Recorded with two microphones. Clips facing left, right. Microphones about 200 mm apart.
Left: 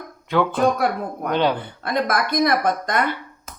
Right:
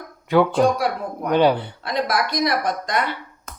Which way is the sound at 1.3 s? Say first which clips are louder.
Right 4 dB; 10° right (ahead or behind).